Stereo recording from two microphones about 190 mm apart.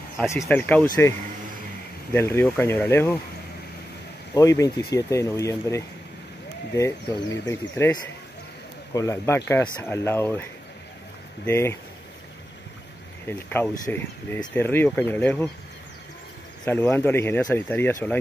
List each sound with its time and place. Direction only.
0.3 s speech: 10° left (ahead or behind)
2.1 s speech: 15° left (ahead or behind)
4.3 s speech: 15° left (ahead or behind)
11.4 s speech: 15° left (ahead or behind)
13.3 s speech: 10° left (ahead or behind)
16.6 s speech: 10° left (ahead or behind)